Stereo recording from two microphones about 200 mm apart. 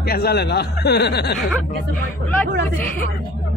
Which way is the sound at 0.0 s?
50° left (ahead or behind).